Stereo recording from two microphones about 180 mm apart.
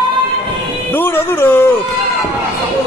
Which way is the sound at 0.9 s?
10° left (ahead or behind).